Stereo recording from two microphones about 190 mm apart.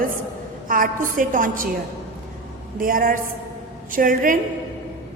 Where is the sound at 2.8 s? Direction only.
50° right (ahead or behind).